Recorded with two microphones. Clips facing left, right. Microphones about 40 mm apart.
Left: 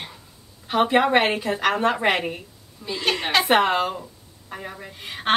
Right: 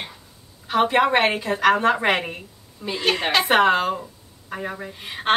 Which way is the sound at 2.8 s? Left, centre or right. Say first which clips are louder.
Right 2 dB; centre.